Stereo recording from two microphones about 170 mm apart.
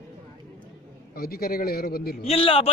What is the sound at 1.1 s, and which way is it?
A man's voice, 60° left (ahead or behind).